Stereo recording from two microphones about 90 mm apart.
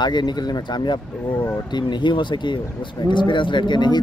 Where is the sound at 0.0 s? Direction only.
55° left (ahead or behind).